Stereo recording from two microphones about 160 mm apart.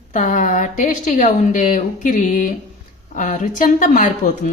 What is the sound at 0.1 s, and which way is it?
Speech, 55° left (ahead or behind).